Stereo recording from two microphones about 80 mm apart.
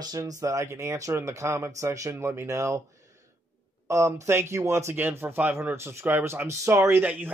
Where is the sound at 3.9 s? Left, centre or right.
Right.